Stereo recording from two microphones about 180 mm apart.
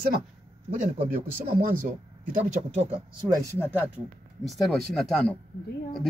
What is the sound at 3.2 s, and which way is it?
Speech, 20° right (ahead or behind).